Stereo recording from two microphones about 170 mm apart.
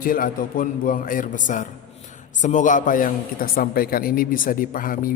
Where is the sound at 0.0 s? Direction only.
55° left (ahead or behind).